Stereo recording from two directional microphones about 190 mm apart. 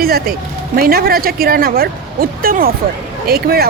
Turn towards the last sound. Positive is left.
turn(degrees=-55)  # may be behind; listen again after turning